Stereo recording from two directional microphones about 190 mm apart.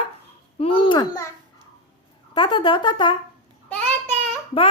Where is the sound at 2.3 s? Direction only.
25° left (ahead or behind).